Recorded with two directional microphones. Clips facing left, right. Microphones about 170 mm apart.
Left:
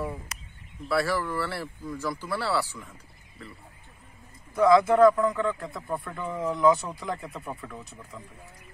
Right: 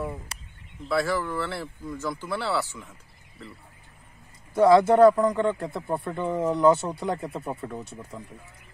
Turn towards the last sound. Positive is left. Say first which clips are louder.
# right 5 dB
turn(degrees=-35)  # may be behind; listen again after turning